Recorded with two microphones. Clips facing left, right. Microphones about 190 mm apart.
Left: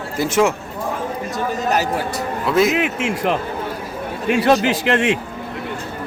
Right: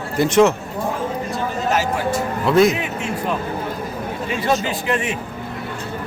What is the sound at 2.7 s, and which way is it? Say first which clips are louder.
Speech: left 4 dB; 85° left.